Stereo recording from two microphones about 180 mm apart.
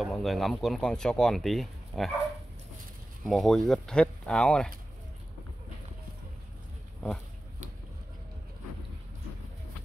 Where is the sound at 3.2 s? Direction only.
Centre (ahead or behind).